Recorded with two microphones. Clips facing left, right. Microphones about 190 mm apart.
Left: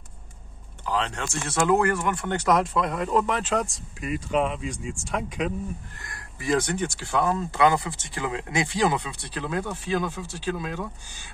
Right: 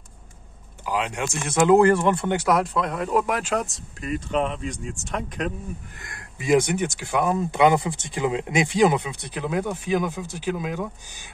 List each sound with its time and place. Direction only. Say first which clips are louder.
0.8 s speech: right 2 dB; 10° right (ahead or behind); by 2.2 s 30° right (ahead or behind)
2.2 s speech: right 1 dB; 10° right (ahead or behind)
4.0 s speech: even; 5° left (ahead or behind)
5.9 s speech: right 2 dB; 20° right (ahead or behind)